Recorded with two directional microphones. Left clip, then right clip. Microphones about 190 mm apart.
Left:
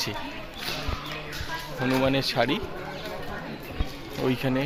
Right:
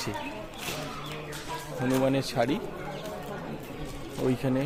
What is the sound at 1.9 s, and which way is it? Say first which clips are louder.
Speech: left 2 dB; centre (ahead or behind).